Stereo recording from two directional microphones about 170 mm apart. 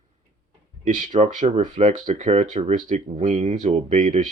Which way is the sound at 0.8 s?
50° right (ahead or behind).